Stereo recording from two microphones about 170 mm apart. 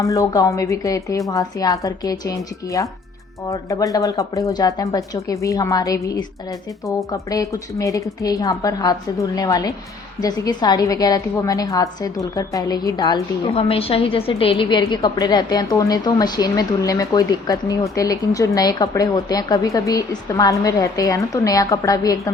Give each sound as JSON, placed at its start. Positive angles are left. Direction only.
{"t": 0.0, "sound": "a woman's voice", "side_deg": 20}
{"t": 3.5, "sound": "a woman's voice", "side_deg": 20}